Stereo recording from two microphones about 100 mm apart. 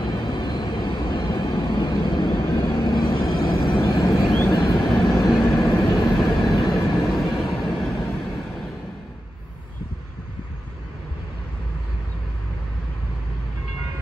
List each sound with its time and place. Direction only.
0.0 s vehicle: 45° left (ahead or behind)
4.7 s vehicle: centre (ahead or behind)